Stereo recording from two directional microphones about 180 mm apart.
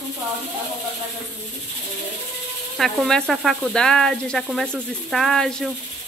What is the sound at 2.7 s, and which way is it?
Speech, centre (ahead or behind).